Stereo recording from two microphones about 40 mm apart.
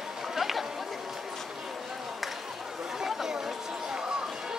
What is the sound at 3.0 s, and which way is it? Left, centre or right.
Chatter, centre.